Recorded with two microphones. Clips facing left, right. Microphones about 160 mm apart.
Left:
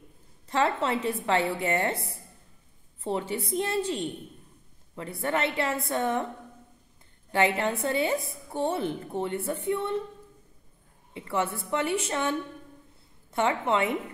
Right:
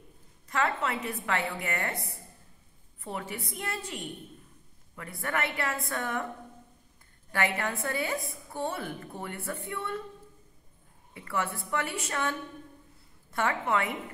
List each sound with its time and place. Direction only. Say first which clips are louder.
0.5 s a woman's voice: left 4 dB; 30° left (ahead or behind)
3.0 s a woman's voice: left 7 dB; 25° left (ahead or behind)
7.3 s a woman's voice: left 5 dB; 25° left (ahead or behind)
11.1 s a woman's voice: left 4 dB; 25° left (ahead or behind)